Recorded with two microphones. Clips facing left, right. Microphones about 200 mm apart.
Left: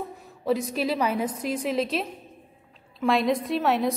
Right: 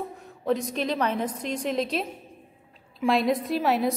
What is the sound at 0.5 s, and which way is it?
A woman's voice, 5° left (ahead or behind).